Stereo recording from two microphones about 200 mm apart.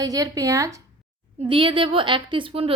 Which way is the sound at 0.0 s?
15° right (ahead or behind).